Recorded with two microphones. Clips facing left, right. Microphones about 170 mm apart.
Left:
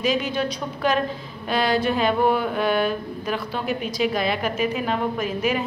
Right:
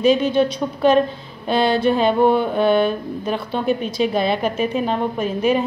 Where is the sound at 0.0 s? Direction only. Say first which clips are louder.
Right 7 dB; 25° right (ahead or behind).